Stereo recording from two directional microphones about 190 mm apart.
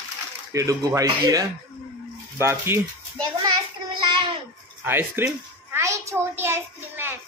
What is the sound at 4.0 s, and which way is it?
Babbling, 25° right (ahead or behind).